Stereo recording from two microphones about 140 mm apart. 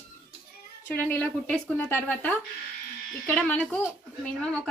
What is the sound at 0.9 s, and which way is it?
Speech, 15° left (ahead or behind).